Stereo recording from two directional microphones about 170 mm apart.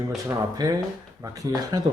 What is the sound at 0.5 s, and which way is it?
Speech, 20° right (ahead or behind).